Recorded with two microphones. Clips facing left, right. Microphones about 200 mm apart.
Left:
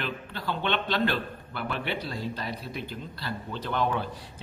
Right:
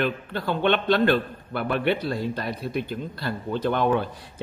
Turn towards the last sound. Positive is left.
turn(degrees=-55)  # may be behind; listen again after turning